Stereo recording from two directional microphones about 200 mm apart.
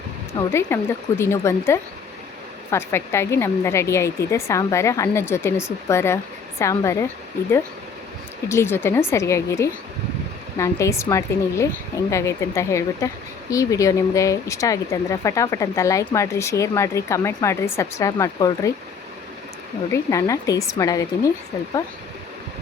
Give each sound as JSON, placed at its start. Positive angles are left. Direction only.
{"t": 0.4, "sound": "speech", "side_deg": 15}
{"t": 8.4, "sound": "speech", "side_deg": 10}
{"t": 19.9, "sound": "speech", "side_deg": 15}